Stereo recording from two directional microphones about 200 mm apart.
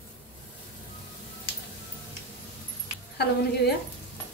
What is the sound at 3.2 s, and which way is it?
Speech, 55° left (ahead or behind).